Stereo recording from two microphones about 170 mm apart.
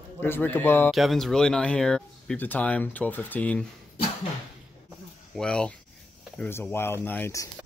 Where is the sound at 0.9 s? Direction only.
Centre (ahead or behind).